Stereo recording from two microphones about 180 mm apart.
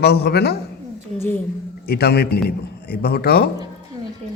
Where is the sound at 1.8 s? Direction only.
60° left (ahead or behind).